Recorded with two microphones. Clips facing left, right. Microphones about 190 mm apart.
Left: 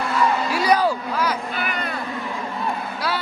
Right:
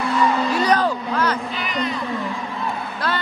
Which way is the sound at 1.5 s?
55° left (ahead or behind).